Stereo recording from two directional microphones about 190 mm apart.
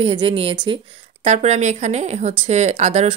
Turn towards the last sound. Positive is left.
turn(degrees=-35)  # may be behind; listen again after turning